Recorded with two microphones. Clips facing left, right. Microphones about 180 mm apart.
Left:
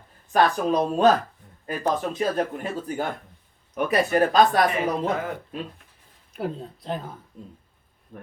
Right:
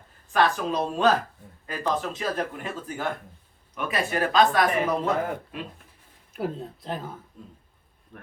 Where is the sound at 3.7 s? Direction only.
40° left (ahead or behind).